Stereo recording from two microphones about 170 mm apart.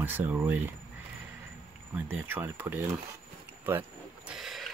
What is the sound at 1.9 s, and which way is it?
Speech, 10° right (ahead or behind).